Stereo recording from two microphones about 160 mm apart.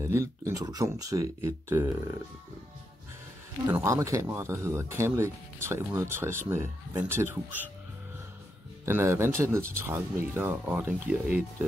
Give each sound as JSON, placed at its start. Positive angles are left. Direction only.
{"t": 0.0, "sound": "speech", "side_deg": -20}
{"t": 3.6, "sound": "speech", "side_deg": -15}
{"t": 8.8, "sound": "speech", "side_deg": -15}